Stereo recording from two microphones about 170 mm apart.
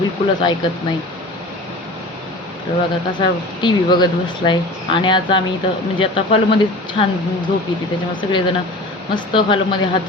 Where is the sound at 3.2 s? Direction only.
25° left (ahead or behind).